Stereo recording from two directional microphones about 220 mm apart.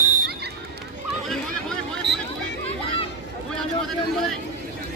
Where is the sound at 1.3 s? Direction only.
Centre (ahead or behind).